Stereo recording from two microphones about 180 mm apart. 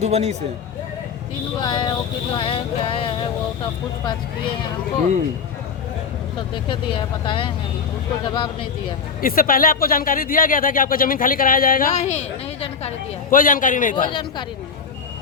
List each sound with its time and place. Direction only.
0.0 s speech: 35° right (ahead or behind)
1.6 s vehicle: 25° left (ahead or behind)
6.7 s vehicle: 30° left (ahead or behind)
9.2 s speech: 55° left (ahead or behind)
11.9 s a woman's voice: 40° left (ahead or behind)
13.3 s speech: 50° left (ahead or behind)
13.9 s vehicle: 25° left (ahead or behind)